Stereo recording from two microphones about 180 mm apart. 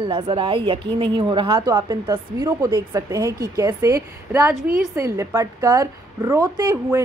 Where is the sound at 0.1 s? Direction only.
30° right (ahead or behind).